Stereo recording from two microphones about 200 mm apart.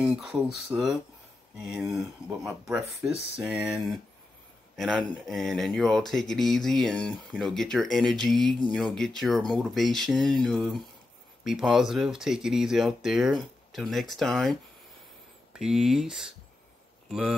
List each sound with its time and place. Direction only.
0.0 s speech: 5° right (ahead or behind)